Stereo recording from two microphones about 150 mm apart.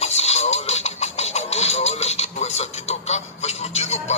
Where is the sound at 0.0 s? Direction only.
45° left (ahead or behind).